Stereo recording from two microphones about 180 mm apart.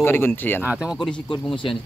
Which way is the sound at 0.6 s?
Centre (ahead or behind).